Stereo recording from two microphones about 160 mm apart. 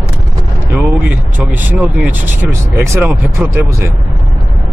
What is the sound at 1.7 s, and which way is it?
Speech, 10° right (ahead or behind).